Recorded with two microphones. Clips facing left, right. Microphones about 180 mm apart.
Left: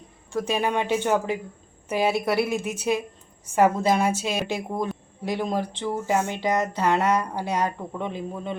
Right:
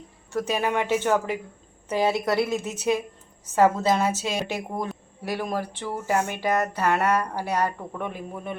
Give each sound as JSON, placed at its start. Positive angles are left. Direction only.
{"t": 0.3, "sound": "a woman's voice", "side_deg": 15}